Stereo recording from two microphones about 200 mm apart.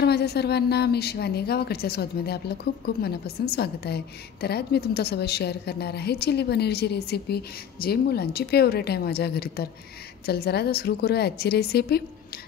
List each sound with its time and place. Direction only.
0.0 s a woman's voice: 55° left (ahead or behind)